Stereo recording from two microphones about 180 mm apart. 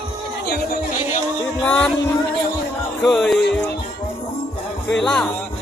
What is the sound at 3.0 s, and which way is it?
Music, 5° left (ahead or behind).